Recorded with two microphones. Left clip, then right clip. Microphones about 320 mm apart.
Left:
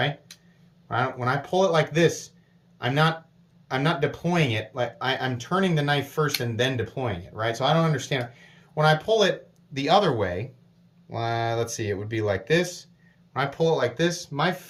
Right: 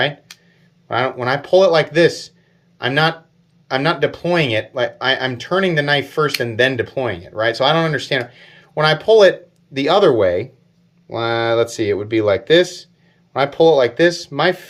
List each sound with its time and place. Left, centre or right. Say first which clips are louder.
0.9 s speech: right 7 dB; centre